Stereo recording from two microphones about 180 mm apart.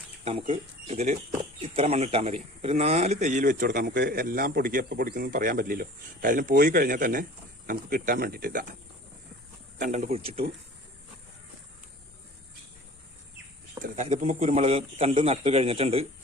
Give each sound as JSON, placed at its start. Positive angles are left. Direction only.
{"t": 0.3, "sound": "speech", "side_deg": -35}
{"t": 9.7, "sound": "a man's voice", "side_deg": -45}
{"t": 13.8, "sound": "a man's voice", "side_deg": -40}